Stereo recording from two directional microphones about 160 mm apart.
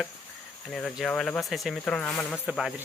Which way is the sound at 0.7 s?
5° left (ahead or behind).